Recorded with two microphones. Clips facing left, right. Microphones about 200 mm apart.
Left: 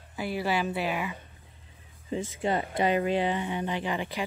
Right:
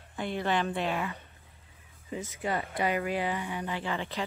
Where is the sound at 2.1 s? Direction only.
25° left (ahead or behind).